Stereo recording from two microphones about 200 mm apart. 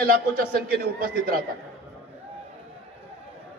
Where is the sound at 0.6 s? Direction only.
45° right (ahead or behind).